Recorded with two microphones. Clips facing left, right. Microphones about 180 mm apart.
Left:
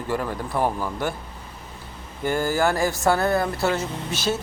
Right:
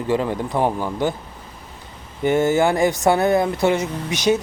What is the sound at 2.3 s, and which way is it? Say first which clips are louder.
Speech: right 5 dB; 20° right (ahead or behind).